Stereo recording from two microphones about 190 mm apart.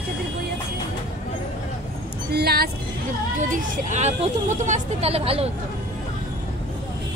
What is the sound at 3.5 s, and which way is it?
Speech, 40° right (ahead or behind).